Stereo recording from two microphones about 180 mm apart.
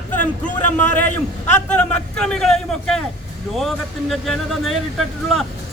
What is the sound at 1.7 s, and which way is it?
A man's voice, 5° left (ahead or behind).